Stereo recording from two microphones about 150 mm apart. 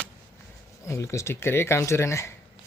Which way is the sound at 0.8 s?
20° left (ahead or behind).